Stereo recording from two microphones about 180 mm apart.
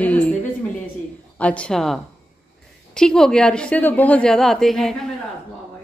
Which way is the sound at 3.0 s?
5° left (ahead or behind).